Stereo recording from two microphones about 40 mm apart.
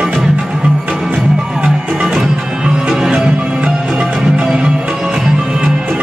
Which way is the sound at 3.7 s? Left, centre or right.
Centre.